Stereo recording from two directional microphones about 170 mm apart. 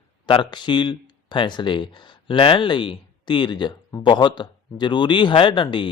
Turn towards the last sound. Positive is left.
turn(degrees=30)  # may be behind; listen again after turning